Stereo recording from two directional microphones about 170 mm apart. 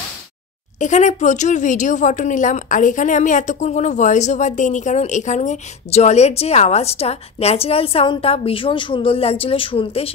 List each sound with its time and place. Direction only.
0.7 s speech: 45° left (ahead or behind)